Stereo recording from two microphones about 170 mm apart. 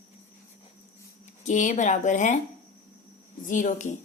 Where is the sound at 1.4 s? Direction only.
45° left (ahead or behind).